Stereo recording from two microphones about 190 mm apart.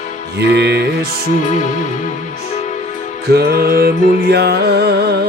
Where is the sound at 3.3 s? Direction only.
55° right (ahead or behind).